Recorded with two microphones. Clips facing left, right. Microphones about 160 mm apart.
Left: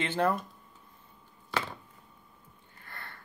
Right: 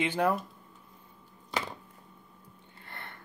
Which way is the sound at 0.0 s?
10° right (ahead or behind).